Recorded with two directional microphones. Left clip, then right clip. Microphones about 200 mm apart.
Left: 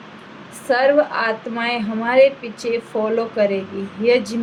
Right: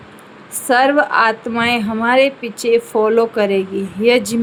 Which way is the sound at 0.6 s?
60° right (ahead or behind).